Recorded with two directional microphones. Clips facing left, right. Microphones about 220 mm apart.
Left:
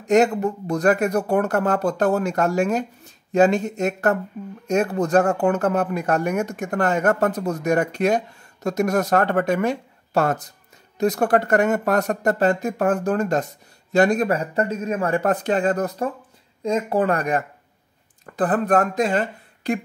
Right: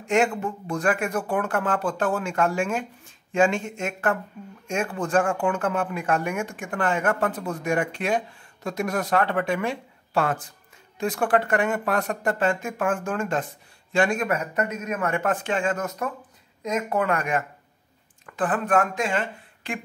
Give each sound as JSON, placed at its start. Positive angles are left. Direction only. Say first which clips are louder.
{"t": 0.0, "sound": "speech", "louder": "left 5 dB", "side_deg": 40}